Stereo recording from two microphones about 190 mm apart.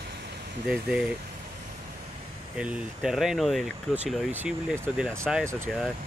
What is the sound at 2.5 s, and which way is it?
Speech, 5° right (ahead or behind).